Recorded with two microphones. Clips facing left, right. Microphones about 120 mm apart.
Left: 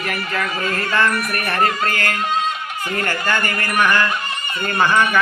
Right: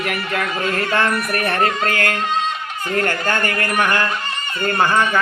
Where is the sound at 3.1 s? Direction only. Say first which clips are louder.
Right 1 dB; 55° right (ahead or behind).